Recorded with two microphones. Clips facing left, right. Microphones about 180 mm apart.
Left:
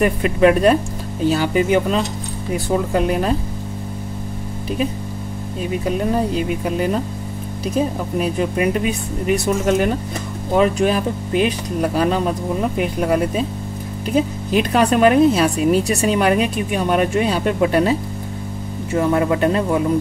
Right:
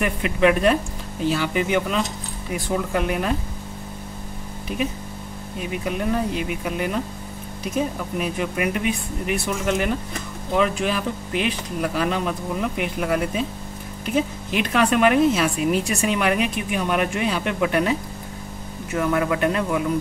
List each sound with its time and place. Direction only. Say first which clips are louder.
0.0 s speech: left 5 dB; 40° left (ahead or behind)
5.9 s speech: left 4 dB; 35° left (ahead or behind)